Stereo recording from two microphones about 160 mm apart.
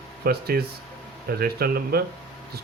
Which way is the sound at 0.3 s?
75° right (ahead or behind).